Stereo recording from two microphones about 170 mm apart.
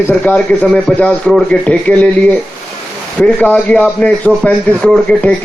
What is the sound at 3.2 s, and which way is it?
A man's voice, 5° left (ahead or behind).